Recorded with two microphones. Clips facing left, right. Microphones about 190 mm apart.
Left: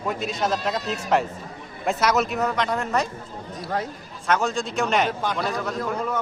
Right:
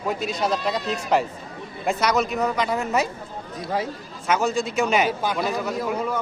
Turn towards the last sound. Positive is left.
turn(degrees=-5)  # may be behind; listen again after turning